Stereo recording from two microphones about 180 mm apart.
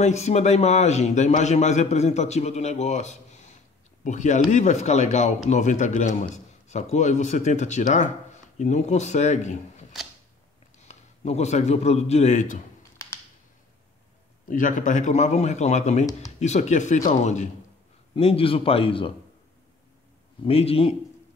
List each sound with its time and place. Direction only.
0.0 s a man's voice: 40° left (ahead or behind)
10.9 s a man's voice: 40° left (ahead or behind)
14.5 s a man's voice: 45° left (ahead or behind)
18.1 s a man's voice: 30° left (ahead or behind)
20.4 s a man's voice: 35° left (ahead or behind)